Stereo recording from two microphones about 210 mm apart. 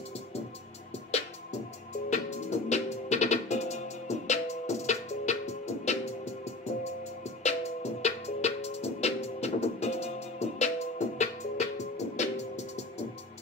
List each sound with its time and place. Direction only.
1.1 s music: 30° left (ahead or behind)
7.4 s music: 30° left (ahead or behind)